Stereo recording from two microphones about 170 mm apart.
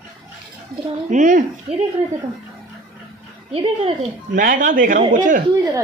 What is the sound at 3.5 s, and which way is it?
Speech, 35° right (ahead or behind).